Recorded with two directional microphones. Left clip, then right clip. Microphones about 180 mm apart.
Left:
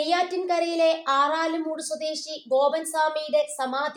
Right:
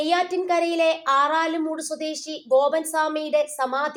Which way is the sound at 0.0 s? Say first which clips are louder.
Right 2 dB; 30° right (ahead or behind).